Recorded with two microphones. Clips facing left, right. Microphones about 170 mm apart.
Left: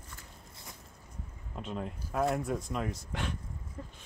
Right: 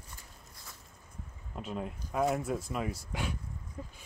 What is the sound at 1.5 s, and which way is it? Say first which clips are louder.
Speech: even; 5° right (ahead or behind).